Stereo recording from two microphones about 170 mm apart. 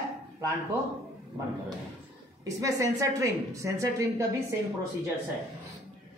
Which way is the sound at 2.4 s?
20° right (ahead or behind).